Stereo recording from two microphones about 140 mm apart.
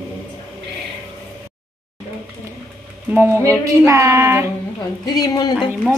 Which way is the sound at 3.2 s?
15° right (ahead or behind).